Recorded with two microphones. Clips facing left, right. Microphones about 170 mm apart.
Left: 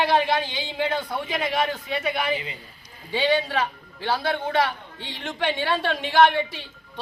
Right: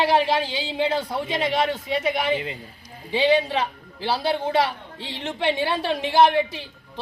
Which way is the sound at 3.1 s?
20° right (ahead or behind).